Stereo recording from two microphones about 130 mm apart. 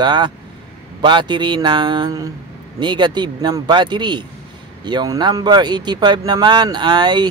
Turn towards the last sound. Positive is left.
turn(degrees=-35)  # may be behind; listen again after turning